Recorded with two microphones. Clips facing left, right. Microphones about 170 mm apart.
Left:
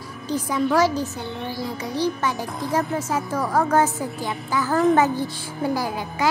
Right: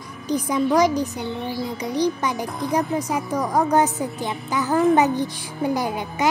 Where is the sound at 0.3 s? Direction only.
15° right (ahead or behind).